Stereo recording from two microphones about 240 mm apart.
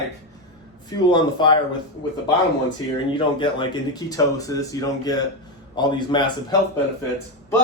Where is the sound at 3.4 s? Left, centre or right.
Centre.